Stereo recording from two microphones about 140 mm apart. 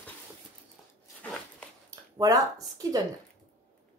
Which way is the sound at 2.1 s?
25° right (ahead or behind).